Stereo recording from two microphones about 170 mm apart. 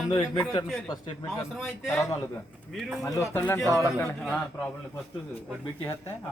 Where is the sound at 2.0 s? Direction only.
15° left (ahead or behind).